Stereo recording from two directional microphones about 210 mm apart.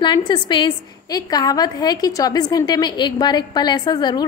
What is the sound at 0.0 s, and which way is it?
A woman's voice, 20° left (ahead or behind).